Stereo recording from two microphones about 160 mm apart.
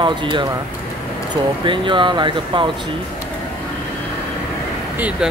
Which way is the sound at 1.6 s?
30° right (ahead or behind).